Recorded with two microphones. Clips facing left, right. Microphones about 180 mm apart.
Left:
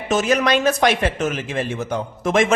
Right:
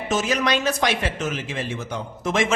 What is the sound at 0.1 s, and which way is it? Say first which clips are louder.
Speech: left 5 dB; 55° left (ahead or behind).